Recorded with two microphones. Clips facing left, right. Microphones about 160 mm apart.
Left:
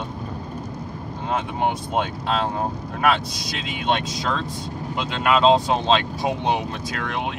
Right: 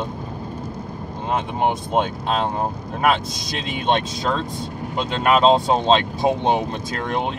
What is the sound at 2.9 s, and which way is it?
Speech, 20° right (ahead or behind).